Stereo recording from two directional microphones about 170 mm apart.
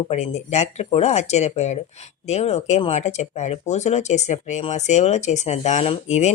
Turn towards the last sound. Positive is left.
turn(degrees=40)  # may be behind; listen again after turning